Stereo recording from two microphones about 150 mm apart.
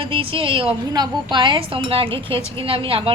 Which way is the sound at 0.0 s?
35° right (ahead or behind).